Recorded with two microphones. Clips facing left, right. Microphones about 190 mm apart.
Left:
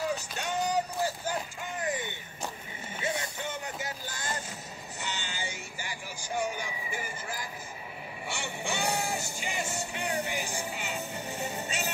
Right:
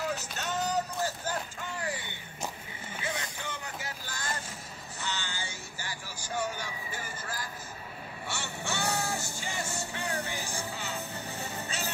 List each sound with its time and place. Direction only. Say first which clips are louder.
0.4 s a sound: left 1 dB; 15° left (ahead or behind)
3.0 s vehicle: left 4 dB; 25° left (ahead or behind)
8.3 s music: left 2 dB; 15° left (ahead or behind)